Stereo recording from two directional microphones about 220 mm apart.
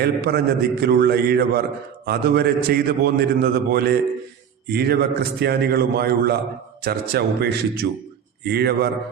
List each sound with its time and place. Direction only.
0.0 s a man's voice: 45° right (ahead or behind)